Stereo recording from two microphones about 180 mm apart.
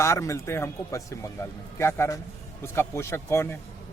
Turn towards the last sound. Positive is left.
turn(degrees=15)  # may be behind; listen again after turning